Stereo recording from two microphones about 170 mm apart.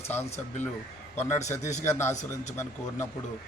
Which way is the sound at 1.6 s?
45° left (ahead or behind).